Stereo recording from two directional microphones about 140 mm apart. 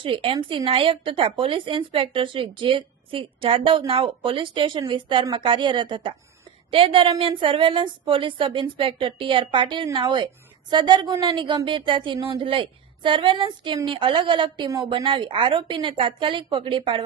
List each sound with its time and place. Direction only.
0.0 s a woman's voice: 40° right (ahead or behind)